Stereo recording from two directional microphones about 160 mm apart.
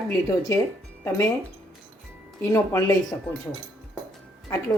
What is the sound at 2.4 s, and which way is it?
Speech, 20° left (ahead or behind).